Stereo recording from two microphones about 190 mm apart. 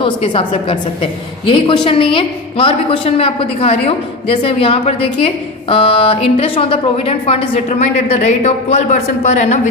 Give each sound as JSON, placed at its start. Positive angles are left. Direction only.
{"t": 0.0, "sound": "a woman's voice", "side_deg": 30}